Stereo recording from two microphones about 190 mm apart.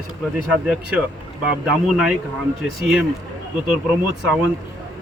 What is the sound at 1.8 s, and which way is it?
Speech, 5° right (ahead or behind).